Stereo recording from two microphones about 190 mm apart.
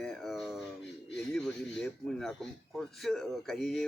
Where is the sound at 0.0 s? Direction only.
Centre (ahead or behind).